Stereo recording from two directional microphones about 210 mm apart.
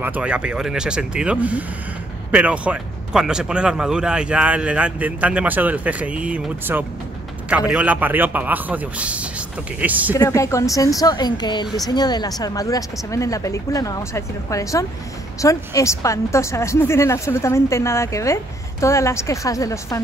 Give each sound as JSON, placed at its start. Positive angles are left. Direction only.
{"t": 0.0, "sound": "a man's voice", "side_deg": -5}
{"t": 10.1, "sound": "speech", "side_deg": 15}